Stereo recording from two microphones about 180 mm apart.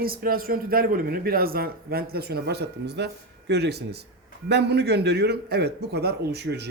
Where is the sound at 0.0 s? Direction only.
55° right (ahead or behind).